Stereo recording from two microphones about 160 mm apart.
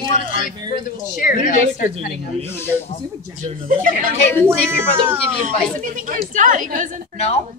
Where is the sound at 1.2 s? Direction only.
55° left (ahead or behind).